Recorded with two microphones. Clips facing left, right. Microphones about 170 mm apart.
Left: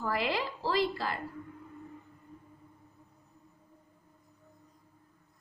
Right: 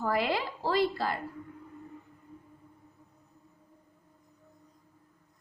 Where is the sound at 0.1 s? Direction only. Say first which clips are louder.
Right 2 dB; 50° right (ahead or behind).